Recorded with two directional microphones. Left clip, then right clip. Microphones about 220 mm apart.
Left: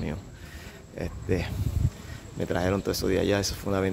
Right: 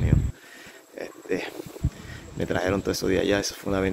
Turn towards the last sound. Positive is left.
turn(degrees=5)  # may be behind; listen again after turning